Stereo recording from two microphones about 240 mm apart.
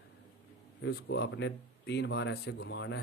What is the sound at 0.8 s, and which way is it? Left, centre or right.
A man's voice, left.